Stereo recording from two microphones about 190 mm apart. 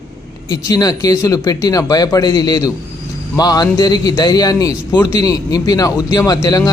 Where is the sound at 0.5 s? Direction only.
20° left (ahead or behind).